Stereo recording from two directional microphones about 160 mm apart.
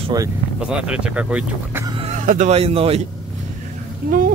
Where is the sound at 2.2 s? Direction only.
50° right (ahead or behind).